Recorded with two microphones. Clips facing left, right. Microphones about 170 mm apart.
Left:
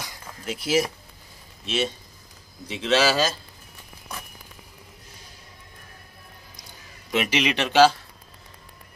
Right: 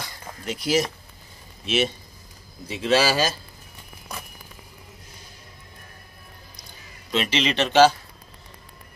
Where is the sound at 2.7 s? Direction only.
10° right (ahead or behind).